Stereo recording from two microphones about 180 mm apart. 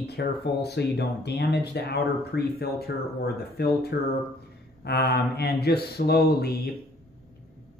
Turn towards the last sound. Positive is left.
turn(degrees=60)  # may be behind; listen again after turning